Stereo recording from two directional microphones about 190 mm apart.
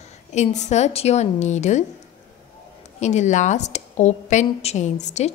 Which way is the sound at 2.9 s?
35° left (ahead or behind).